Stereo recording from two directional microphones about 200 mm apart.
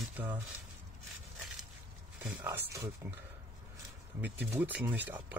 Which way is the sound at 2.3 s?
10° right (ahead or behind).